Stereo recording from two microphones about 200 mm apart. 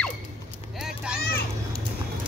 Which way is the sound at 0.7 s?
5° right (ahead or behind).